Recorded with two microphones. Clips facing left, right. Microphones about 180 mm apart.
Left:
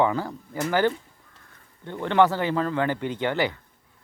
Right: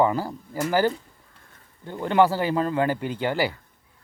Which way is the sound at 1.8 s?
10° right (ahead or behind).